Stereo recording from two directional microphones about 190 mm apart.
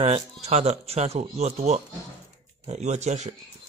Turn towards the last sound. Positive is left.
turn(degrees=-35)  # may be behind; listen again after turning